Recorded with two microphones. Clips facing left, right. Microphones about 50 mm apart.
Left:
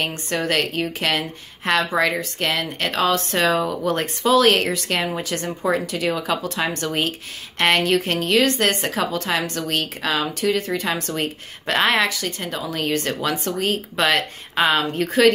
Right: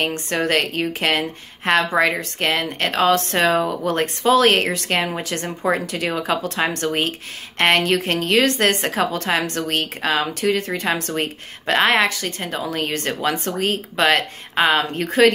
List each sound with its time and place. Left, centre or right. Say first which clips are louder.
0.3 s a woman's voice: right 1 dB; right